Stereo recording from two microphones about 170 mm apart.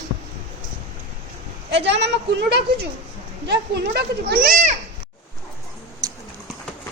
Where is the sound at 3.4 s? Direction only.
75° right (ahead or behind); by 4.7 s 50° right (ahead or behind).